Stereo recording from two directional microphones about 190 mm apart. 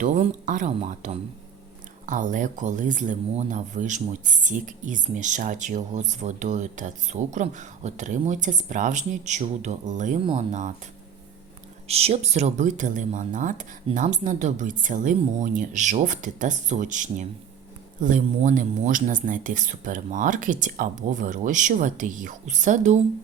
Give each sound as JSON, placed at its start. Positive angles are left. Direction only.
{"t": 0.0, "sound": "speech", "side_deg": -40}
{"t": 11.9, "sound": "speech", "side_deg": -35}